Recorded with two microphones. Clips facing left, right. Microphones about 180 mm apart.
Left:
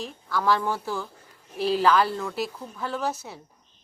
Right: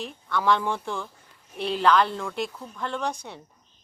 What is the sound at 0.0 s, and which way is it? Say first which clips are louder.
A woman's voice: even; centre (ahead or behind).